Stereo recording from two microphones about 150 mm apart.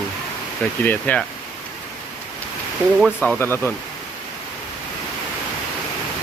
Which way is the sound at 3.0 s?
5° right (ahead or behind).